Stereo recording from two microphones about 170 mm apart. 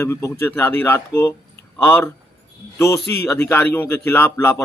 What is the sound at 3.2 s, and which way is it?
A man's voice, 15° left (ahead or behind).